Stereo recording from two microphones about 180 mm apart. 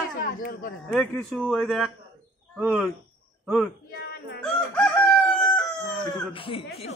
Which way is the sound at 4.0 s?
65° left (ahead or behind).